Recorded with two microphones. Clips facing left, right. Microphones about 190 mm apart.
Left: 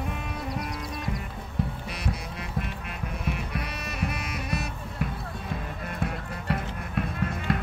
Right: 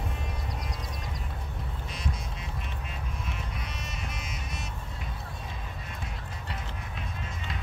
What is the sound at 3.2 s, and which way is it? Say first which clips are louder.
Music: left 7 dB; 65° left (ahead or behind).